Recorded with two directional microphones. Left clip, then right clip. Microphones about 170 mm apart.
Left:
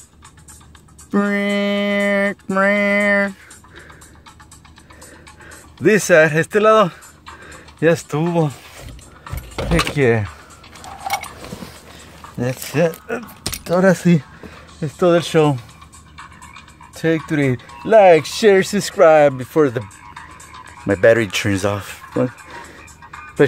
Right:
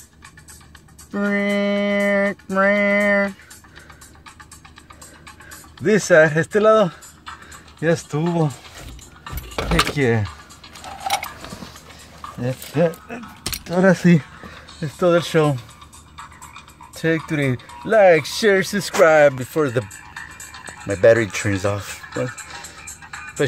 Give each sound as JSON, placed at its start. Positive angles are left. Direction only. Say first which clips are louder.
{"t": 1.1, "sound": "music", "louder": "left 2 dB", "side_deg": 35}
{"t": 2.5, "sound": "a man's voice", "louder": "left 1 dB", "side_deg": 40}
{"t": 5.8, "sound": "a man's voice", "louder": "left 2 dB", "side_deg": 40}
{"t": 9.9, "sound": "speech", "louder": "left 4 dB", "side_deg": 20}
{"t": 11.0, "sound": "a sound", "louder": "even", "side_deg": -40}
{"t": 12.4, "sound": "speech", "louder": "left 2 dB", "side_deg": 45}
{"t": 13.4, "sound": "a sound", "louder": "left 2 dB", "side_deg": 25}
{"t": 13.9, "sound": "speech", "louder": "even", "side_deg": 5}
{"t": 16.9, "sound": "speech", "louder": "left 2 dB", "side_deg": 10}
{"t": 19.8, "sound": "frog", "louder": "right 4 dB", "side_deg": -30}
{"t": 20.8, "sound": "speech", "louder": "left 1 dB", "side_deg": 35}
{"t": 21.8, "sound": "a sound", "louder": "left 5 dB", "side_deg": 35}